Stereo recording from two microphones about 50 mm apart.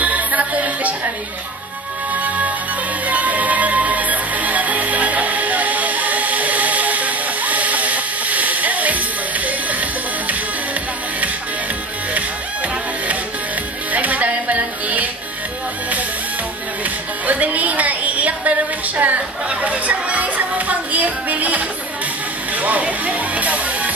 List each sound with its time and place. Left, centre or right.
0.0 s music: right
2.1 s music: right
13.9 s music: right
17.3 s a sound: right
18.9 s speech: right
22.6 s music: right